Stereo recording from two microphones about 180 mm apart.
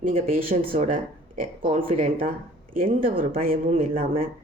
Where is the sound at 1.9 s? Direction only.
45° right (ahead or behind).